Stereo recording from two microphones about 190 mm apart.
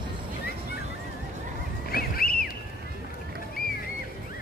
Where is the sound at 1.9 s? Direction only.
50° left (ahead or behind).